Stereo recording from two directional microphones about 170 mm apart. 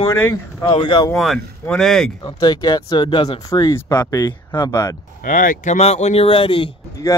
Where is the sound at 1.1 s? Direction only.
Centre (ahead or behind).